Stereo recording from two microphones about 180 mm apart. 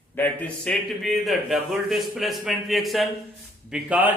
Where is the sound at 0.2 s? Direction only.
10° left (ahead or behind).